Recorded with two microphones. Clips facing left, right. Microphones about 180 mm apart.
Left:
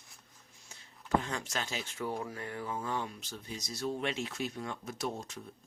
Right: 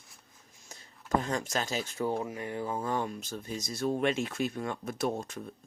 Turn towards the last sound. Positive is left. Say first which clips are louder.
# right 6 dB
turn(degrees=-55)  # may be behind; listen again after turning